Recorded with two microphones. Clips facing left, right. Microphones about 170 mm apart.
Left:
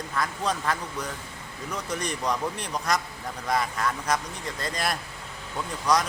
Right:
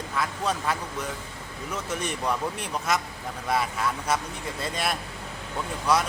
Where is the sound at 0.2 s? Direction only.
5° right (ahead or behind).